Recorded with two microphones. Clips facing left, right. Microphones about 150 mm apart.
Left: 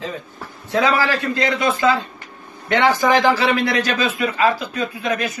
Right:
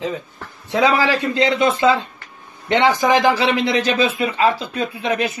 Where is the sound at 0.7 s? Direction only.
20° right (ahead or behind).